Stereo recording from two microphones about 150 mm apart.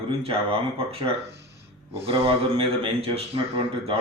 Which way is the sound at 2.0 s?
40° right (ahead or behind).